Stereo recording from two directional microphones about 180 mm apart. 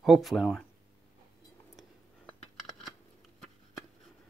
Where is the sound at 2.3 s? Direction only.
Centre (ahead or behind).